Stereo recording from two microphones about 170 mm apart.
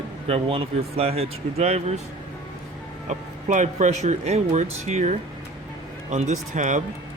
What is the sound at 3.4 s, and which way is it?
Speech, 45° right (ahead or behind).